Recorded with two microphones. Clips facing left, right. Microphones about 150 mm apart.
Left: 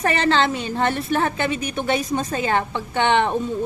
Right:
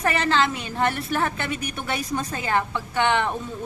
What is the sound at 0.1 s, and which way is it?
A woman's voice, 30° left (ahead or behind).